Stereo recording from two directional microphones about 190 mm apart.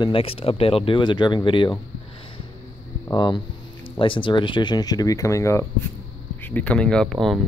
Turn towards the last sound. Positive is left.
turn(degrees=0)  # may be behind; listen again after turning